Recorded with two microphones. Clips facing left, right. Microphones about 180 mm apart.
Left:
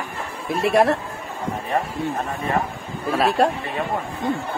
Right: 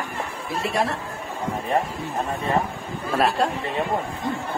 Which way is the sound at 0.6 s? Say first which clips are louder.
Left 8 dB; 65° left (ahead or behind).